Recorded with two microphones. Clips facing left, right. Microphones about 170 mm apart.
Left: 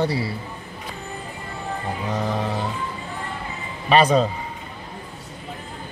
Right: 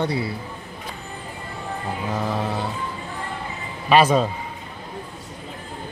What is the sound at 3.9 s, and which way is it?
Speech, 5° right (ahead or behind).